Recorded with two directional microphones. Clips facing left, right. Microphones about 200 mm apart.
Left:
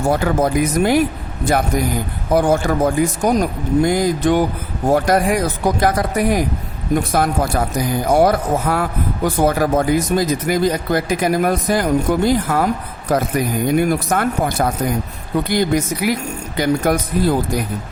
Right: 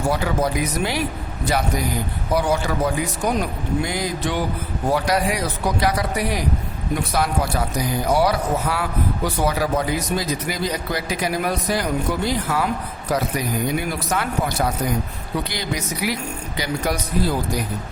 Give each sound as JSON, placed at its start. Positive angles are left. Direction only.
{"t": 0.1, "sound": "speech", "side_deg": 50}
{"t": 2.3, "sound": "speech", "side_deg": 50}